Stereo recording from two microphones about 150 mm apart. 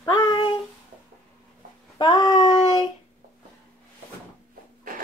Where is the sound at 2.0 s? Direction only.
25° left (ahead or behind).